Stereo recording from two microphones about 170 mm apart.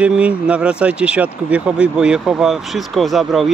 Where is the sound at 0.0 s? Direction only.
5° right (ahead or behind).